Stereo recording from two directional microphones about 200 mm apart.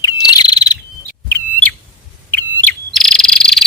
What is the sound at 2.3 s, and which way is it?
Bird, 10° left (ahead or behind).